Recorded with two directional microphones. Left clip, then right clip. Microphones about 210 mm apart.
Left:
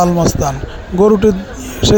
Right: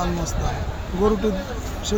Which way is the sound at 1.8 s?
45° left (ahead or behind).